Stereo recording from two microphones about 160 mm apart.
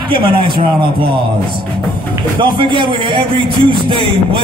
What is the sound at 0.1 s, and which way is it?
Speech, 35° right (ahead or behind).